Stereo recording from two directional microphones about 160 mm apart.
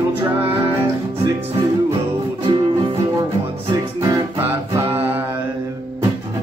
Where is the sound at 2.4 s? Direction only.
30° right (ahead or behind); by 5.2 s 15° right (ahead or behind).